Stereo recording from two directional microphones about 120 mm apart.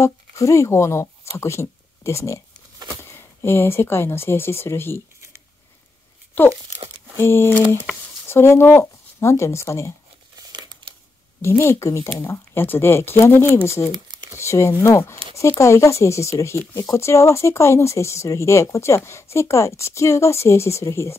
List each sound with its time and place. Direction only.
0.0 s speech: 25° left (ahead or behind)
4.9 s a sound: 25° right (ahead or behind)
7.2 s speech: 20° left (ahead or behind)
10.5 s crumpling: 40° right (ahead or behind)
11.4 s speech: 20° left (ahead or behind)